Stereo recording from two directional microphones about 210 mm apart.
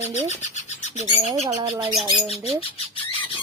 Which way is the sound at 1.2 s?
30° right (ahead or behind).